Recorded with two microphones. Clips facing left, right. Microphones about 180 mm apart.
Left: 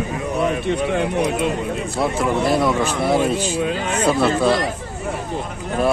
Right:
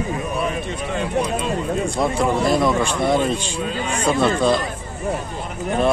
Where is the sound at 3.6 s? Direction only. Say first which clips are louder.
Left 3 dB; 60° left (ahead or behind).